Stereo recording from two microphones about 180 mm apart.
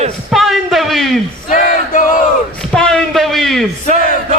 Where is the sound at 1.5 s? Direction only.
45° left (ahead or behind).